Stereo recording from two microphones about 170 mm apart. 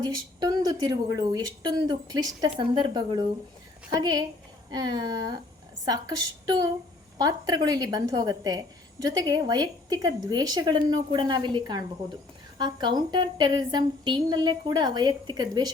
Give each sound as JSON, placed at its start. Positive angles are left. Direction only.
{"t": 0.0, "sound": "a woman's voice", "side_deg": -25}